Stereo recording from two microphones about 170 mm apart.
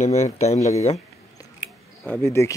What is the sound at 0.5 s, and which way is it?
Speech, 20° left (ahead or behind).